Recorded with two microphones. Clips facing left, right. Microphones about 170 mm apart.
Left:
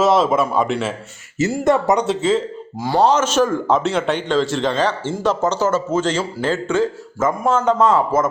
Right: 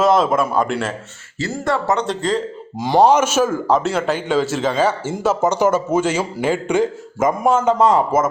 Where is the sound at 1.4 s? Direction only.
20° left (ahead or behind).